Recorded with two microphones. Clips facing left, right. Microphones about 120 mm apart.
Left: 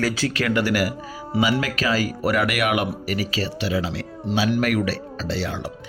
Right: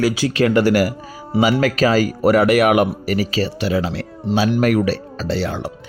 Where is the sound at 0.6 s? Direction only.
35° right (ahead or behind).